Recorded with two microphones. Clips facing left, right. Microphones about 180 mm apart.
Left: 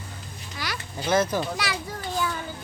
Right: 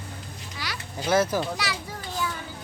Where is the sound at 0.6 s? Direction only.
45° left (ahead or behind).